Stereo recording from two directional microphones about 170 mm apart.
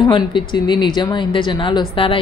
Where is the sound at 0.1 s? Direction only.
30° left (ahead or behind).